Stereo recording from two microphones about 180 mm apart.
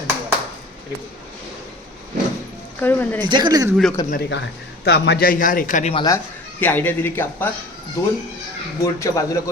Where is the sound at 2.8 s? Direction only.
10° left (ahead or behind).